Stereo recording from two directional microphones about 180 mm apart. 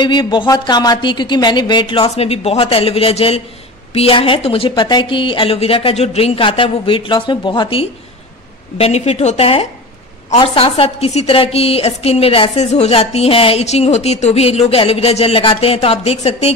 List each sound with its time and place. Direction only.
0.0 s a woman's voice: 25° left (ahead or behind)